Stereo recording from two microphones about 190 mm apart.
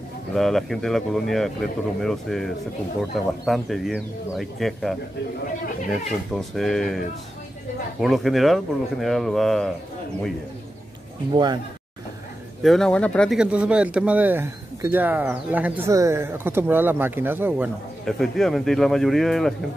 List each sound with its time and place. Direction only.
0.3 s speech: centre (ahead or behind)
8.0 s speech: centre (ahead or behind)
11.3 s speech: 20° right (ahead or behind)
12.6 s speech: 5° left (ahead or behind)
18.0 s speech: centre (ahead or behind)